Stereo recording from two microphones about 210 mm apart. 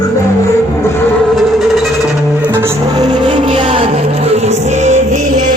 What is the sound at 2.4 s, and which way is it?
Music, 10° right (ahead or behind).